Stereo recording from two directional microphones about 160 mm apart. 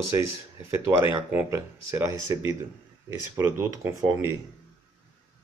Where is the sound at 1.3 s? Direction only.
15° right (ahead or behind).